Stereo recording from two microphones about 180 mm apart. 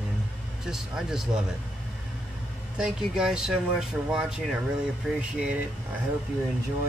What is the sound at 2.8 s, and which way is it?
Speech, 5° right (ahead or behind).